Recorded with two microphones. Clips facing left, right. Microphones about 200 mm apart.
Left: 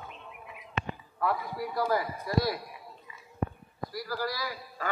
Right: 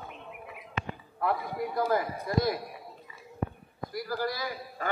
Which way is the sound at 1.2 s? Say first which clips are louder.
Right 1 dB; 20° right (ahead or behind).